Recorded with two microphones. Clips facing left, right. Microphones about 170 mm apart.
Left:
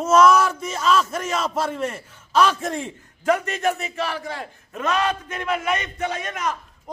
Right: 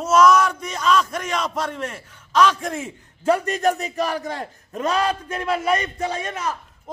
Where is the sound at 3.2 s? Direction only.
35° right (ahead or behind).